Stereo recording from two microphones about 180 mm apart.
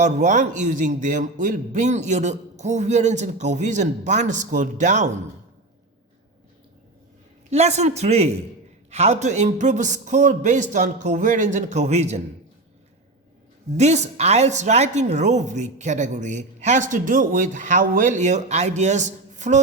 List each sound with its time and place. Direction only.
0.0 s a woman's voice: 45° right (ahead or behind)
7.5 s a woman's voice: 40° right (ahead or behind)
13.7 s a woman's voice: 40° right (ahead or behind)